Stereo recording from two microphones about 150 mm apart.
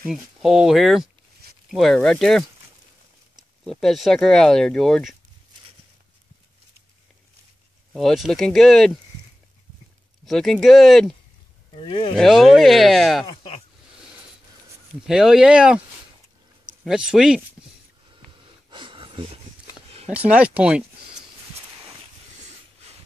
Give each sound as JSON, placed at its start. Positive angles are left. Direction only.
{"t": 0.0, "sound": "speech", "side_deg": 0}
{"t": 3.6, "sound": "speech", "side_deg": 0}
{"t": 7.9, "sound": "speech", "side_deg": 0}
{"t": 10.2, "sound": "speech", "side_deg": 5}
{"t": 11.7, "sound": "speech", "side_deg": 35}
{"t": 12.2, "sound": "speech", "side_deg": 0}
{"t": 15.0, "sound": "speech", "side_deg": -5}
{"t": 16.8, "sound": "speech", "side_deg": -5}
{"t": 18.7, "sound": "a sound", "side_deg": -35}
{"t": 20.1, "sound": "speech", "side_deg": -10}